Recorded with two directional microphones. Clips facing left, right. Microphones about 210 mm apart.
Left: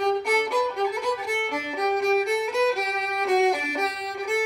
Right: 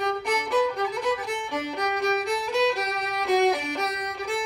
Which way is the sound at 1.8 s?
Centre (ahead or behind).